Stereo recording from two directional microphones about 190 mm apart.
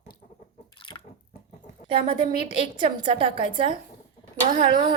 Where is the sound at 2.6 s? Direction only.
25° right (ahead or behind).